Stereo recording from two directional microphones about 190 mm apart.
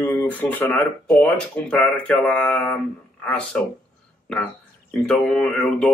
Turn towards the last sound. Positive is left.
turn(degrees=0)  # may be behind; listen again after turning